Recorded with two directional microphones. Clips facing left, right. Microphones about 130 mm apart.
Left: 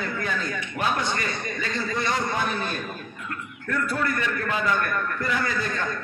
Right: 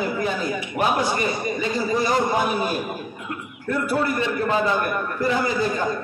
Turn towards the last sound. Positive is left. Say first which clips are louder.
# right 6 dB
turn(degrees=-25)  # may be behind; listen again after turning